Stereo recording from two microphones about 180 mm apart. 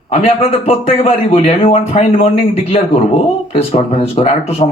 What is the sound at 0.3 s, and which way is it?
A man's voice, 35° left (ahead or behind).